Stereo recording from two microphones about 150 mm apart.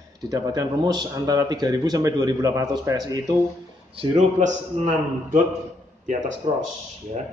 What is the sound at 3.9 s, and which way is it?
A man's voice, 50° right (ahead or behind).